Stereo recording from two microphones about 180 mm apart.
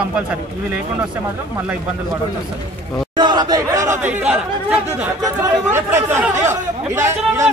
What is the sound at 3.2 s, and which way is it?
Chatter, 25° right (ahead or behind).